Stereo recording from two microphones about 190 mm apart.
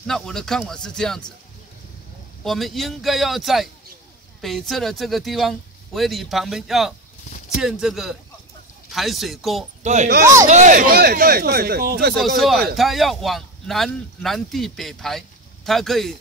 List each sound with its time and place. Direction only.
0.0 s speech: centre (ahead or behind)
2.4 s speech: centre (ahead or behind)
10.4 s speech: 40° right (ahead or behind)
12.4 s speech: centre (ahead or behind)